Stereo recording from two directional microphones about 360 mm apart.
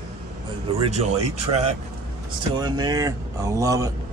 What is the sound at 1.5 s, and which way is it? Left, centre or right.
Speech, centre.